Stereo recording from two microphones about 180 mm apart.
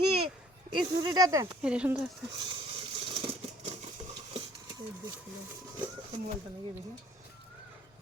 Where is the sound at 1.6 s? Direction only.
5° right (ahead or behind).